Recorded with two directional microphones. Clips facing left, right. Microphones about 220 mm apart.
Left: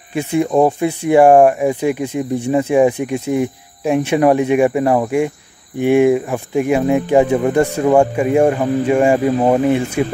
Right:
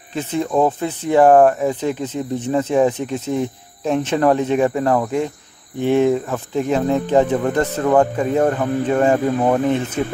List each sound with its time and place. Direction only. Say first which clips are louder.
0.1 s speech: left 4 dB; 10° left (ahead or behind)